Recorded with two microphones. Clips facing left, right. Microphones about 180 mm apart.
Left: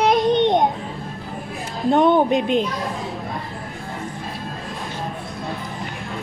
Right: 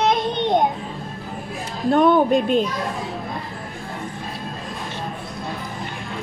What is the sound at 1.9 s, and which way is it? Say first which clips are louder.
Speech: even; 20° left (ahead or behind).